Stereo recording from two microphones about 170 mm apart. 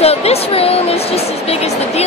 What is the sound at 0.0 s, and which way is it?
Speech, 35° left (ahead or behind).